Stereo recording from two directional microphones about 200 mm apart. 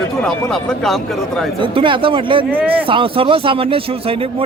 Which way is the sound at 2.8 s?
25° right (ahead or behind).